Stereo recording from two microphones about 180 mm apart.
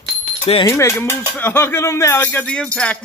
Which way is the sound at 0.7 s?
15° left (ahead or behind).